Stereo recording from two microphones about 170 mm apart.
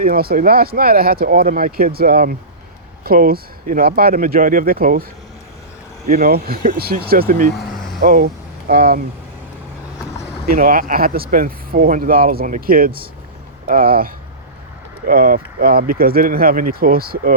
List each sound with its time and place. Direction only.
0.0 s speech: 60° right (ahead or behind)
6.1 s speech: 60° right (ahead or behind)
10.4 s speech: 55° right (ahead or behind)